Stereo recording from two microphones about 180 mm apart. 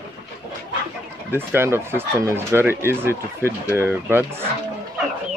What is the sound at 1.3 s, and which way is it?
Speech, 10° right (ahead or behind).